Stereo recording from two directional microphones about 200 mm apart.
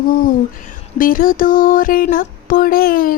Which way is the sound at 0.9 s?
45° left (ahead or behind).